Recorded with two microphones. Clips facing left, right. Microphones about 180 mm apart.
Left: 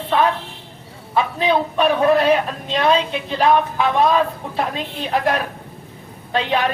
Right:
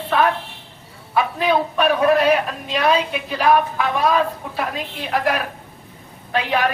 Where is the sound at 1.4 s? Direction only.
25° left (ahead or behind).